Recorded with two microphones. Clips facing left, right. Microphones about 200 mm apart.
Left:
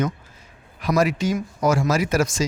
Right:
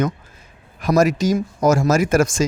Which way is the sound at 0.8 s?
45° right (ahead or behind).